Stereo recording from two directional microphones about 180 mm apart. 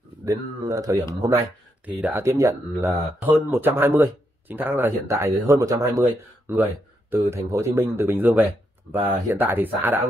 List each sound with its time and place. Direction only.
0.2 s speech: 20° right (ahead or behind)
1.9 s speech: 10° right (ahead or behind)